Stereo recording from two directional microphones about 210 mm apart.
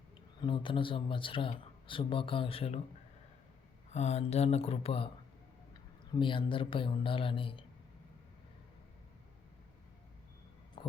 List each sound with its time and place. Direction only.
0.4 s speech: 25° left (ahead or behind)
3.9 s speech: 30° left (ahead or behind)
6.1 s speech: 25° left (ahead or behind)
10.8 s heart sounds: 25° left (ahead or behind)